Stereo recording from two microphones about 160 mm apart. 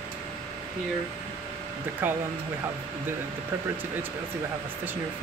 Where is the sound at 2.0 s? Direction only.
10° right (ahead or behind).